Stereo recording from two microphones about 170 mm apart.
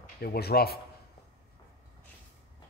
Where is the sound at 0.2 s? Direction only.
65° left (ahead or behind).